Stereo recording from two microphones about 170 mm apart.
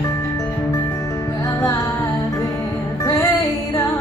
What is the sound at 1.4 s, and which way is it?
Music, 20° left (ahead or behind).